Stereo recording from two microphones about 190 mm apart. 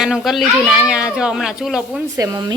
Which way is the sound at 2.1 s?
20° right (ahead or behind).